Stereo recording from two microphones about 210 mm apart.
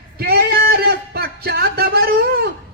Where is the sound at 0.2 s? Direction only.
45° right (ahead or behind).